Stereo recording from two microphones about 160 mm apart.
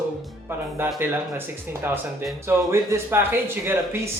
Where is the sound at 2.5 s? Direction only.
15° right (ahead or behind).